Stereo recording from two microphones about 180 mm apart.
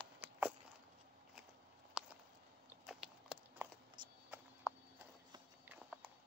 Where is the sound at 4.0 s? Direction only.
25° right (ahead or behind).